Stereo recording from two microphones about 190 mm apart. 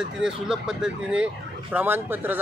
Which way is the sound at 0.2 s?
5° right (ahead or behind).